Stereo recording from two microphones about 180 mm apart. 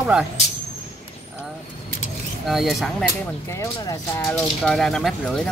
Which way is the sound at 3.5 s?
20° left (ahead or behind).